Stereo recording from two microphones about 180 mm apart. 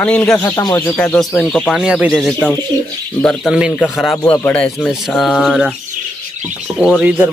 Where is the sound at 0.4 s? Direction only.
20° left (ahead or behind); by 4.2 s centre (ahead or behind).